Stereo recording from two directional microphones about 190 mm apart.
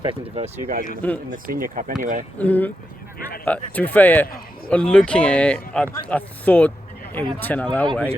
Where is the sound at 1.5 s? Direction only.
50° right (ahead or behind).